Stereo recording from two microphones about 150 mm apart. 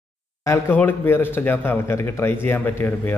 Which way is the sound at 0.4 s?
20° left (ahead or behind).